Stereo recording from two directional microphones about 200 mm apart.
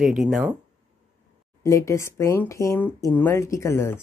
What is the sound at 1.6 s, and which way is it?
Speech, 15° left (ahead or behind).